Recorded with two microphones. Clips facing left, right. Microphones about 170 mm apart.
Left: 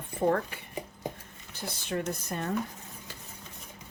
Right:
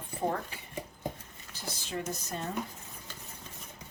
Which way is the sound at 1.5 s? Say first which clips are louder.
Left 4 dB; 60° left (ahead or behind).